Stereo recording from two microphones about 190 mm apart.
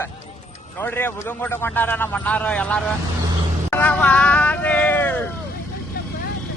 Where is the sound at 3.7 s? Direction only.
10° left (ahead or behind).